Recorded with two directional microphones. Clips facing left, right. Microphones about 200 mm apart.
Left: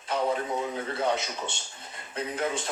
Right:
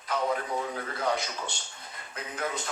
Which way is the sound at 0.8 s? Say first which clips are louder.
Left 2 dB; 25° left (ahead or behind).